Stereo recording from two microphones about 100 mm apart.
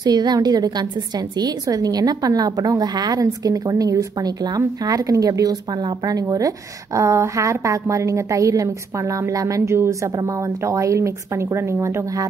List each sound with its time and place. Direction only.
0.0 s a woman's voice: 45° right (ahead or behind); by 12.3 s 30° right (ahead or behind)